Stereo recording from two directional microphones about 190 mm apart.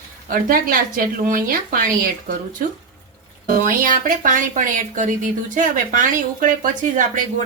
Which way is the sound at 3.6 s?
45° right (ahead or behind).